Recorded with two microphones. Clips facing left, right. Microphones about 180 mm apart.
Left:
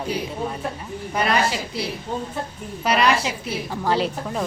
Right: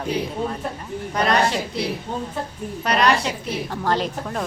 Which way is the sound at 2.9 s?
5° left (ahead or behind).